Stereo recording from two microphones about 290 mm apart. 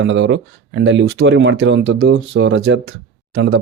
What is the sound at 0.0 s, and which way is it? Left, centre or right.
Speech, right.